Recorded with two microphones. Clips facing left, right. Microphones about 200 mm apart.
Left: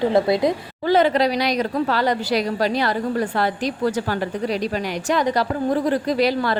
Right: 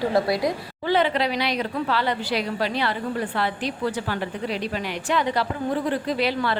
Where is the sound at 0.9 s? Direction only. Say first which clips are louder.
Left 5 dB; 40° left (ahead or behind).